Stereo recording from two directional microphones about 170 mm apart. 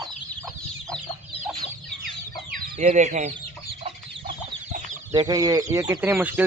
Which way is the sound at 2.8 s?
45° right (ahead or behind).